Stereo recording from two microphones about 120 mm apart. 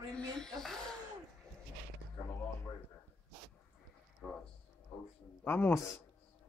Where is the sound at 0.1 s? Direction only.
5° left (ahead or behind).